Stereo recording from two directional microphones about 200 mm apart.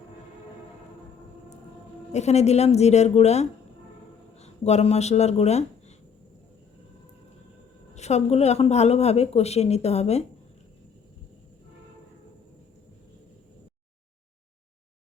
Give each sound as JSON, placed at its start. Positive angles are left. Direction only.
{"t": 2.1, "sound": "speech", "side_deg": 35}
{"t": 7.9, "sound": "speech", "side_deg": 35}